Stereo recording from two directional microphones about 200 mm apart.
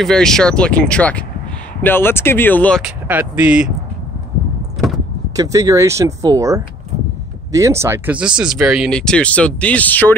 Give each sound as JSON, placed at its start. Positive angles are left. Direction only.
{"t": 0.0, "sound": "speech", "side_deg": 5}
{"t": 2.8, "sound": "speech", "side_deg": -10}
{"t": 4.7, "sound": "vehicle", "side_deg": 0}
{"t": 5.3, "sound": "speech", "side_deg": -15}